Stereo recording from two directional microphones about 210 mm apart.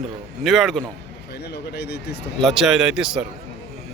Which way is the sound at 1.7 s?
55° left (ahead or behind).